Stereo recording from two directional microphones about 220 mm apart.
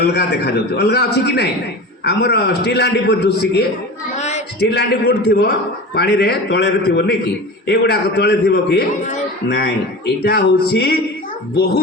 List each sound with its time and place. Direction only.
0.0 s a man's voice: 50° left (ahead or behind)
4.2 s a sound: 30° left (ahead or behind)
4.6 s a man's voice: 45° left (ahead or behind)